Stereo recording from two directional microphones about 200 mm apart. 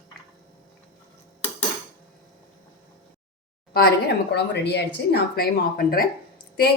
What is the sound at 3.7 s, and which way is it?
A woman's voice, 50° left (ahead or behind).